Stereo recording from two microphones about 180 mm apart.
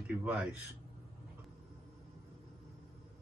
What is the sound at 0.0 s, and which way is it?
Speech, 5° right (ahead or behind).